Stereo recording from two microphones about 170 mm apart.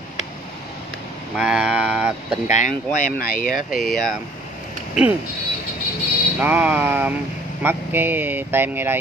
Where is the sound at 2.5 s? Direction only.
50° left (ahead or behind).